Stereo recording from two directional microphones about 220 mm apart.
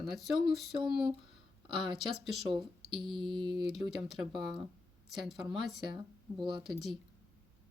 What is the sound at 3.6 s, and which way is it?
Speech, centre (ahead or behind).